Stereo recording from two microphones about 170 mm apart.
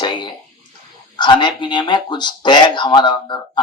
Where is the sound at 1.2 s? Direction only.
25° left (ahead or behind).